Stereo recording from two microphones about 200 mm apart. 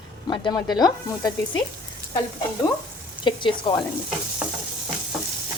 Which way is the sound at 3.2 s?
25° left (ahead or behind).